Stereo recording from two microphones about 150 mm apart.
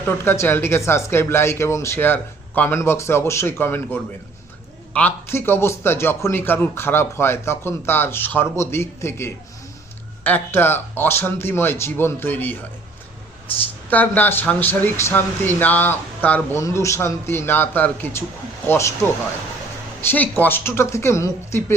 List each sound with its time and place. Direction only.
0.3 s a man's voice: 15° left (ahead or behind)
13.9 s a man's voice: 10° left (ahead or behind)